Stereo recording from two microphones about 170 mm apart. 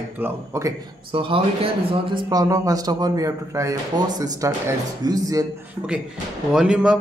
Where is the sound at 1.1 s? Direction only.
30° right (ahead or behind).